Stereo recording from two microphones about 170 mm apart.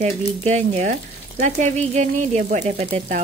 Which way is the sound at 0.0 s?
45° right (ahead or behind).